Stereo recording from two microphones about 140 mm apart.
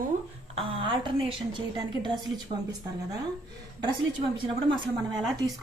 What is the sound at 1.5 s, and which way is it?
Speech, 35° right (ahead or behind).